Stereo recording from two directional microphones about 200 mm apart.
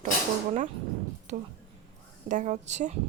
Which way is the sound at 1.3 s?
35° right (ahead or behind).